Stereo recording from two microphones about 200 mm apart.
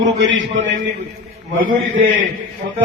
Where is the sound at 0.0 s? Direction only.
70° right (ahead or behind).